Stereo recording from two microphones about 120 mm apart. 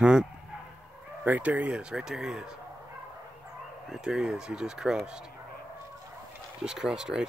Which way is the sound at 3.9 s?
5° right (ahead or behind).